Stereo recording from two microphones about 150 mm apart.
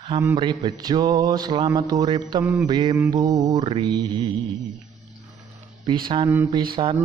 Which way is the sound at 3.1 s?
25° right (ahead or behind).